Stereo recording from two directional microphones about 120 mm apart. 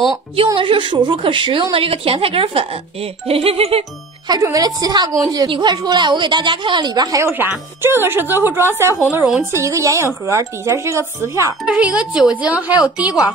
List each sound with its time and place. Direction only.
0.6 s a woman's voice: 45° right (ahead or behind)
4.3 s a woman's voice: 30° right (ahead or behind)
7.2 s speech: 15° right (ahead or behind)
9.2 s a woman's voice: centre (ahead or behind)
9.5 s a woman's voice: 25° right (ahead or behind)
11.6 s speech: 10° right (ahead or behind)